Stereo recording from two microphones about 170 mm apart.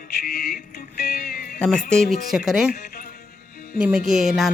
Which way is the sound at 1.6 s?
5° left (ahead or behind).